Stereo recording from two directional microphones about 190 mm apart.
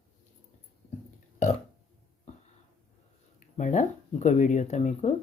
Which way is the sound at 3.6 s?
40° left (ahead or behind).